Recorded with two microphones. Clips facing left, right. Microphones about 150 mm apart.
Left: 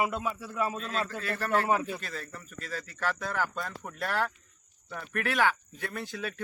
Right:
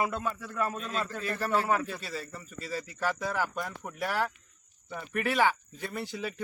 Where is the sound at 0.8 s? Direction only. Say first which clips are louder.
Even; 10° right (ahead or behind).